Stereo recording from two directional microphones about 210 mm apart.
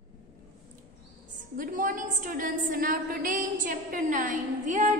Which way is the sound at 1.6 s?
40° right (ahead or behind).